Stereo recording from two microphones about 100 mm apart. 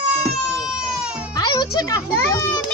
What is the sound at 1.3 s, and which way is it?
Speech, 40° left (ahead or behind).